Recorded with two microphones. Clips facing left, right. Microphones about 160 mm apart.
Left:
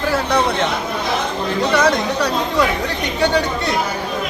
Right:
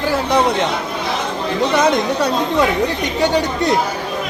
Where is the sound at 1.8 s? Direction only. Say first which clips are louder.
Right 2 dB; 25° right (ahead or behind).